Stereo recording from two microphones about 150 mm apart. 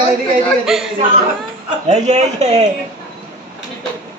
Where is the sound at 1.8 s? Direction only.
45° right (ahead or behind).